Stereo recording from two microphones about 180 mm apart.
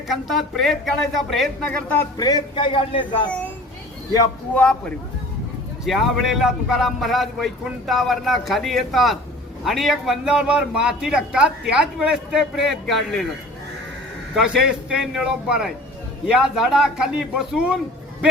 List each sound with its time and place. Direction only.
0.1 s a man's voice: centre (ahead or behind)
2.1 s speech: 20° left (ahead or behind)
3.2 s a child's voice: 10° left (ahead or behind)
4.1 s speech: 20° left (ahead or behind)
5.8 s a man's voice: centre (ahead or behind)
14.3 s a man's voice: 5° right (ahead or behind)